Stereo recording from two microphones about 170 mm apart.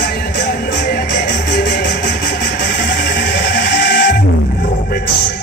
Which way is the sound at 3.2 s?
75° left (ahead or behind).